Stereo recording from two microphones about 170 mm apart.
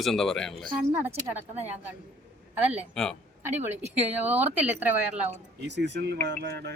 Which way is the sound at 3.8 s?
10° right (ahead or behind).